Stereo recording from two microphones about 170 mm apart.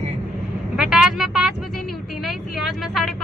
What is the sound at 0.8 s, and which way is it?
Speech, 5° right (ahead or behind).